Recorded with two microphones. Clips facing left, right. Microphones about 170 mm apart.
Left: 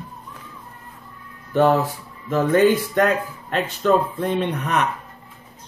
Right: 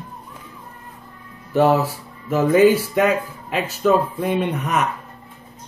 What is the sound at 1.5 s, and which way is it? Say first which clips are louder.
Speech: right 1 dB; 10° right (ahead or behind).